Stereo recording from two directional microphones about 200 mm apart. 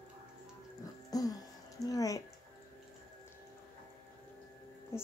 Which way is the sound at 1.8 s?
15° left (ahead or behind).